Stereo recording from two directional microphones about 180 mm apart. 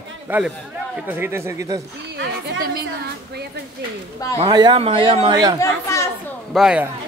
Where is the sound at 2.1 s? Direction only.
70° right (ahead or behind).